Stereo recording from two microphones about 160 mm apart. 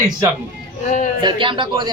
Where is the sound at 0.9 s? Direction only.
50° left (ahead or behind).